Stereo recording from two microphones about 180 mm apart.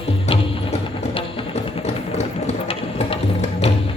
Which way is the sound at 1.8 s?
40° left (ahead or behind).